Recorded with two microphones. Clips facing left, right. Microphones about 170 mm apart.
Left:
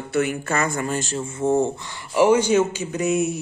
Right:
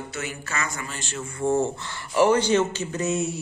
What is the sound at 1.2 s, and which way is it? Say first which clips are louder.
A man's voice: left 2 dB; 20° left (ahead or behind).